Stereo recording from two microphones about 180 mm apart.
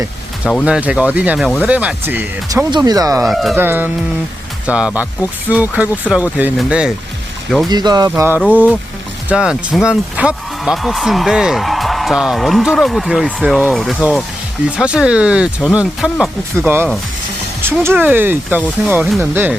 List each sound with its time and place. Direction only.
0.6 s speech: 5° right (ahead or behind)
2.6 s speech: 25° right (ahead or behind)
3.2 s speech: centre (ahead or behind)
3.5 s speech: 10° right (ahead or behind)
7.7 s speech: 25° right (ahead or behind); by 16.3 s centre (ahead or behind)
16.6 s speech: 10° right (ahead or behind)